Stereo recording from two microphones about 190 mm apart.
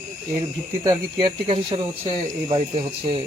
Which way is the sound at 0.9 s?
25° right (ahead or behind).